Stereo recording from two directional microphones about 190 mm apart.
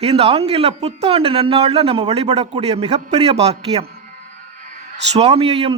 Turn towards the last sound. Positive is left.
turn(degrees=-30)  # may be behind; listen again after turning